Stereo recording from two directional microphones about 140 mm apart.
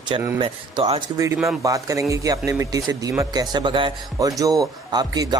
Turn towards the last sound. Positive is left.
turn(degrees=-30)  # may be behind; listen again after turning